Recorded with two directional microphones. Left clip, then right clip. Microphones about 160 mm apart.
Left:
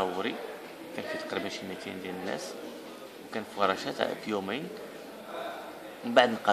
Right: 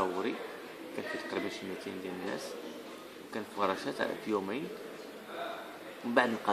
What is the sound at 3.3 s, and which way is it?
Speech, 25° left (ahead or behind).